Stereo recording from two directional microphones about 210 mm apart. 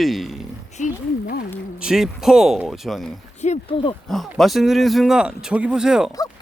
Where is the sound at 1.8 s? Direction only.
Centre (ahead or behind).